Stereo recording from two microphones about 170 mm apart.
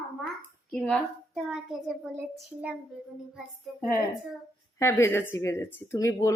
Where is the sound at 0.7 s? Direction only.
Centre (ahead or behind).